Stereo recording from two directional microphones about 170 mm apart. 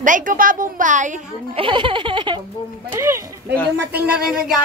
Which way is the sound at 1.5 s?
30° right (ahead or behind).